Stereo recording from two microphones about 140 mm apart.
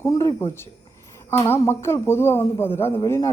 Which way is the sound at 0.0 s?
25° left (ahead or behind).